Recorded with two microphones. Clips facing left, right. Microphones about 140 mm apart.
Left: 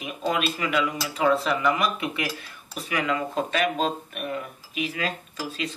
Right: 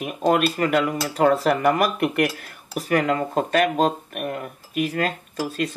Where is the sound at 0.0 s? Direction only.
50° right (ahead or behind).